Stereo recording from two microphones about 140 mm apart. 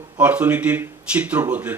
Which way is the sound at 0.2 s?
10° right (ahead or behind).